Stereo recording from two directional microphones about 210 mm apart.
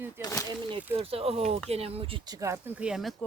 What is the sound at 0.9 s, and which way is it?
Speech, 25° right (ahead or behind).